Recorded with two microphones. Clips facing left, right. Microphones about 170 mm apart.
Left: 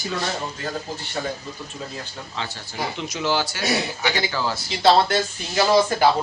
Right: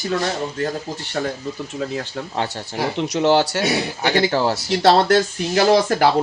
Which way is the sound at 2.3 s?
65° right (ahead or behind).